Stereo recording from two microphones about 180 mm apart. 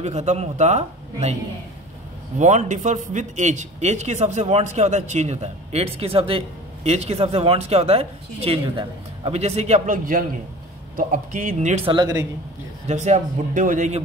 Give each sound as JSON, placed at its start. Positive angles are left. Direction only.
{"t": 0.0, "sound": "a man's voice", "side_deg": -40}
{"t": 2.3, "sound": "a man's voice", "side_deg": -40}
{"t": 11.8, "sound": "speech", "side_deg": -25}
{"t": 12.8, "sound": "a man's voice", "side_deg": -40}